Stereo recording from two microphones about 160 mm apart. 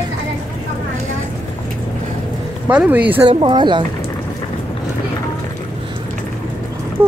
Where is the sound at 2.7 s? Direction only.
10° right (ahead or behind).